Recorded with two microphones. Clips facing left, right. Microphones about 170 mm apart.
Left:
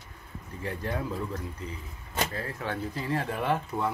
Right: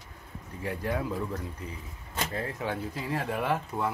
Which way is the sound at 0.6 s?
10° right (ahead or behind).